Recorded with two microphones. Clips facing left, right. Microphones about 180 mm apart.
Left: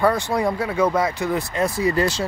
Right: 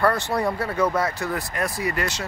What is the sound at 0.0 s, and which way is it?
Speech, 10° left (ahead or behind).